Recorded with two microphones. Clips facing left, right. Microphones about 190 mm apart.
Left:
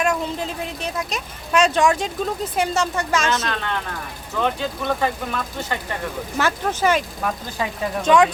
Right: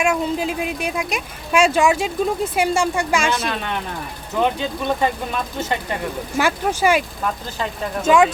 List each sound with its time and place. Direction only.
0.0 s speech: 10° right (ahead or behind)
8.0 s speech: 5° right (ahead or behind)